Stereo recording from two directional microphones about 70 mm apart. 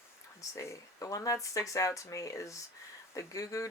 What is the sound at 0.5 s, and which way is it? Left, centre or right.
Speech, left.